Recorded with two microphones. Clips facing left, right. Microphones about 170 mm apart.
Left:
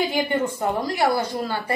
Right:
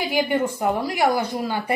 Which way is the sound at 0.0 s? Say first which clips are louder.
Right 1 dB; 10° right (ahead or behind).